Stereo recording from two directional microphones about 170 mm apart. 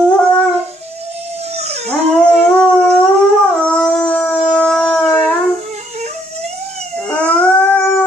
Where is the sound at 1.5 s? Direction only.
40° right (ahead or behind).